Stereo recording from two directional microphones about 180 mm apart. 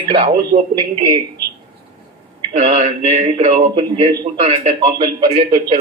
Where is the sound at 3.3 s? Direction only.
25° right (ahead or behind).